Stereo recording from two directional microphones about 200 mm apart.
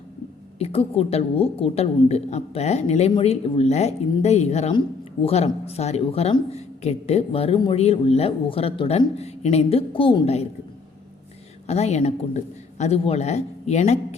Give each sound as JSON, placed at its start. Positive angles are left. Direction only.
{"t": 0.6, "sound": "speech", "side_deg": 30}
{"t": 11.6, "sound": "speech", "side_deg": 30}